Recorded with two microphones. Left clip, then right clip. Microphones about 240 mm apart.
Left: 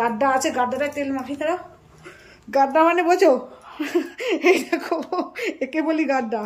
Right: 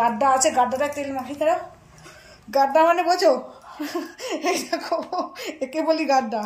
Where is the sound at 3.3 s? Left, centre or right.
Centre.